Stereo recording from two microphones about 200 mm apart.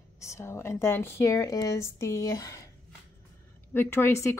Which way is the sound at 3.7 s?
10° left (ahead or behind).